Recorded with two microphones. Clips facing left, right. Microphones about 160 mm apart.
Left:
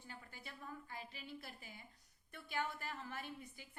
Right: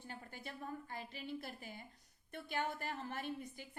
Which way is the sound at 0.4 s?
45° right (ahead or behind).